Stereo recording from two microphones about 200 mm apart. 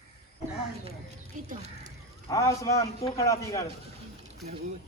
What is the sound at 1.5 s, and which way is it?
Speech, 35° right (ahead or behind).